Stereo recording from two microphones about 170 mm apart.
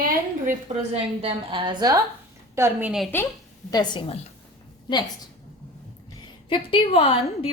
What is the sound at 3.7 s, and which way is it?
Speech, 25° left (ahead or behind).